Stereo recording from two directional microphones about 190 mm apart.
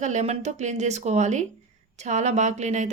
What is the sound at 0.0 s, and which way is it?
Speech, 35° right (ahead or behind).